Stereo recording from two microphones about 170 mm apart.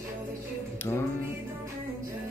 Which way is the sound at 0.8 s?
15° left (ahead or behind).